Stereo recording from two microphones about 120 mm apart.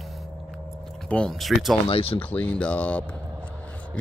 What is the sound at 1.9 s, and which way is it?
Speech, 50° left (ahead or behind).